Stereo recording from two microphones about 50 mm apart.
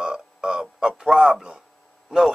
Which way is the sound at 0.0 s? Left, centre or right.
Centre.